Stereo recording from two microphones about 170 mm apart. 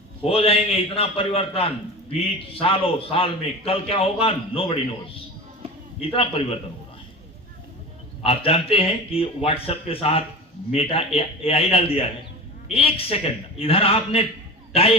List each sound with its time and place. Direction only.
0.2 s a man's voice: 35° left (ahead or behind)
8.2 s a man's voice: 35° left (ahead or behind)